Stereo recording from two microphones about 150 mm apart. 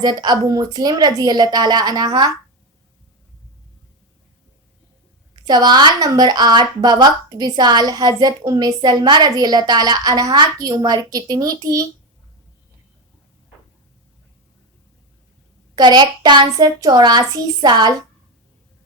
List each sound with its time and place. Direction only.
0.0 s a woman's voice: 25° right (ahead or behind)
5.5 s a woman's voice: 25° right (ahead or behind)
15.7 s a woman's voice: 25° right (ahead or behind)